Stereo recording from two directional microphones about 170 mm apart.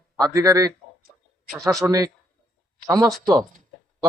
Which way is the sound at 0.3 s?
20° right (ahead or behind).